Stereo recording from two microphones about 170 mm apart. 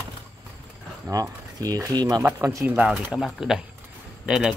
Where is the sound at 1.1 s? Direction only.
20° right (ahead or behind).